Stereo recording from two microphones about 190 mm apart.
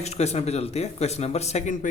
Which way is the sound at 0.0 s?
35° left (ahead or behind).